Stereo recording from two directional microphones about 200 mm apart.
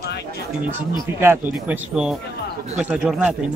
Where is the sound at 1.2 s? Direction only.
10° right (ahead or behind).